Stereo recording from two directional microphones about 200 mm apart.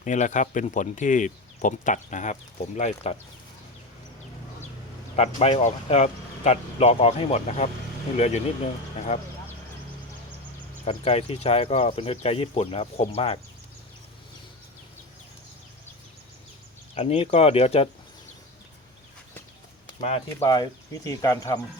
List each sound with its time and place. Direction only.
0.0 s speech: 35° left (ahead or behind)
5.1 s speech: 30° left (ahead or behind)
10.8 s speech: 30° left (ahead or behind)
16.9 s speech: 30° left (ahead or behind)
20.0 s speech: 30° left (ahead or behind)
20.4 s speech: 20° left (ahead or behind)